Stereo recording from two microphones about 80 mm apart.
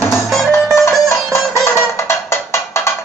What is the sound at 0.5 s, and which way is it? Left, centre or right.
Music, left.